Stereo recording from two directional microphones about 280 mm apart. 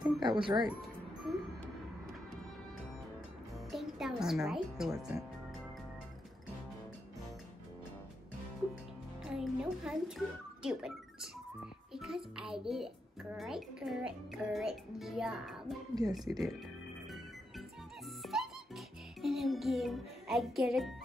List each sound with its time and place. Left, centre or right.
0.0 s speech: centre
0.7 s music: centre
3.7 s speech: centre
9.2 s music: centre
11.9 s a child's voice: centre
15.9 s speech: centre
18.2 s music: centre